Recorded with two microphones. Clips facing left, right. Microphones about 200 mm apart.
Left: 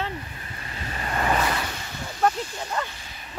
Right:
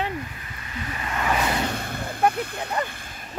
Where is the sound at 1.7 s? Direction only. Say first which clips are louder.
Right 6 dB; 55° right (ahead or behind).